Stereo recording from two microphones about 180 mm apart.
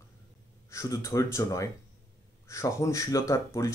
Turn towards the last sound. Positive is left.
turn(degrees=15)  # may be behind; listen again after turning